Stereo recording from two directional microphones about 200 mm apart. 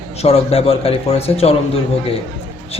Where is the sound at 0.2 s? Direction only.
30° left (ahead or behind).